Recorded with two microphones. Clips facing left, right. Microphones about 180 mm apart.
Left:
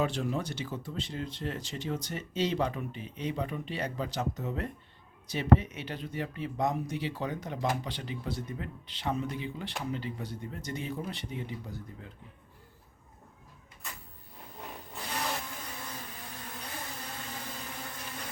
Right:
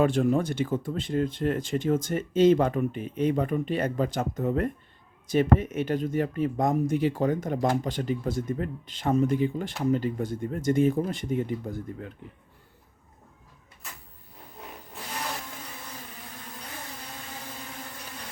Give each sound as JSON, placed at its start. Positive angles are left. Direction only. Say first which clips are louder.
{"t": 0.0, "sound": "speech", "louder": "right 8 dB", "side_deg": -50}